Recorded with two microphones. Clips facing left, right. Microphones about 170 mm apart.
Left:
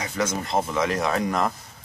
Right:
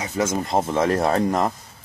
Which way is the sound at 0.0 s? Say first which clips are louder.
Right 3 dB; 20° right (ahead or behind).